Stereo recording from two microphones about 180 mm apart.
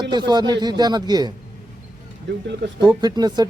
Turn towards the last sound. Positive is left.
turn(degrees=-25)  # may be behind; listen again after turning